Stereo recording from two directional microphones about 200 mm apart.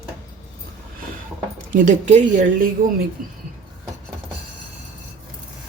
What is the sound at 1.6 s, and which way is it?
Speech, 40° right (ahead or behind).